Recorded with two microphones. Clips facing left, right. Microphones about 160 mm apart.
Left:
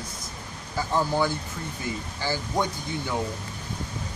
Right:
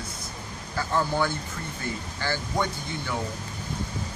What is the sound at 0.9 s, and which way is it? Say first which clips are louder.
Speech: left 1 dB; 15° left (ahead or behind).